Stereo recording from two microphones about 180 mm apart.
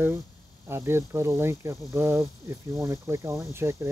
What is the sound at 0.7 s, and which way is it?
Speech, 15° right (ahead or behind).